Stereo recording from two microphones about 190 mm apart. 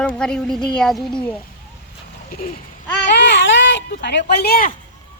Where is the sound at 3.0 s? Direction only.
70° left (ahead or behind); by 4.7 s 55° left (ahead or behind).